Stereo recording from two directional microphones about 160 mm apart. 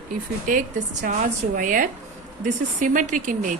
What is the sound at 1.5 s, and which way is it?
A woman's voice, 55° right (ahead or behind).